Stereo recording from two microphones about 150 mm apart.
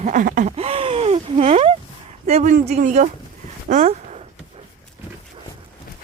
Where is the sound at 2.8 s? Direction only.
55° right (ahead or behind).